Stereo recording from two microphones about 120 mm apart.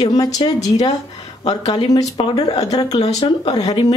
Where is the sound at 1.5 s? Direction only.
55° left (ahead or behind).